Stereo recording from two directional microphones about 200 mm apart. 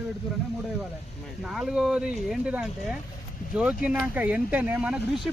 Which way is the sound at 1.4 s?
5° right (ahead or behind).